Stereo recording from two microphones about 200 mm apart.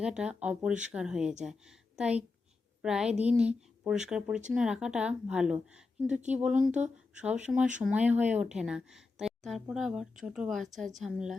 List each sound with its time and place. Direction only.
0.0 s a woman's voice: 5° right (ahead or behind)